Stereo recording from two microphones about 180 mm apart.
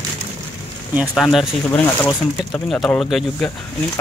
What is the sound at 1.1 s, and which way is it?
Speech, centre (ahead or behind).